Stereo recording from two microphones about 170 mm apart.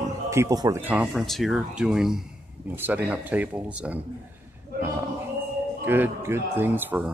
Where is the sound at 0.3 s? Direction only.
20° right (ahead or behind).